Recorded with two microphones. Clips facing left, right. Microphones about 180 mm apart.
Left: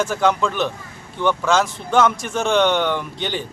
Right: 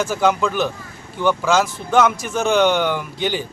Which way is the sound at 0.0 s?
5° right (ahead or behind).